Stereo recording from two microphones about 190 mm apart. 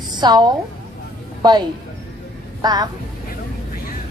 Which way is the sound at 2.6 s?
20° right (ahead or behind).